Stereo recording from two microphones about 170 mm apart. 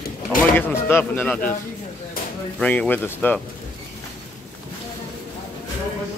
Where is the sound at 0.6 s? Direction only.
10° left (ahead or behind).